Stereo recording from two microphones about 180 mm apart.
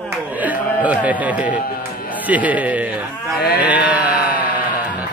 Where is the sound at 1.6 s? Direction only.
55° left (ahead or behind).